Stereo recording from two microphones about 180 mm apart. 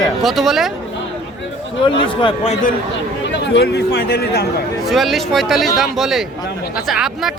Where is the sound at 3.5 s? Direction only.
70° left (ahead or behind).